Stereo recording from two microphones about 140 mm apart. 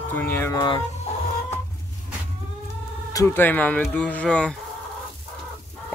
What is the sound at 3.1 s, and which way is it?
Speech, 20° left (ahead or behind).